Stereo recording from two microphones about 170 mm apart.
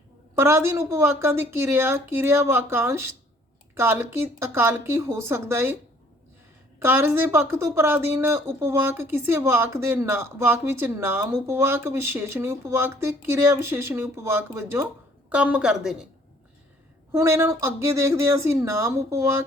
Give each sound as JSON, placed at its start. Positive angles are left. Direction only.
{"t": 0.3, "sound": "speech", "side_deg": -15}
{"t": 6.7, "sound": "a woman's voice", "side_deg": -10}
{"t": 17.1, "sound": "speech", "side_deg": -15}